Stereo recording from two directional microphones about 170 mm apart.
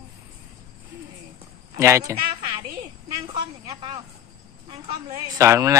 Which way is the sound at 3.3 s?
30° right (ahead or behind).